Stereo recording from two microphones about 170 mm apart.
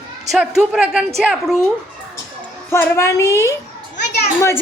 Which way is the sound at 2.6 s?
15° left (ahead or behind).